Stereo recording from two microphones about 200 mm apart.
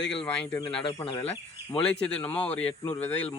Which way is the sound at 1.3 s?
5° left (ahead or behind).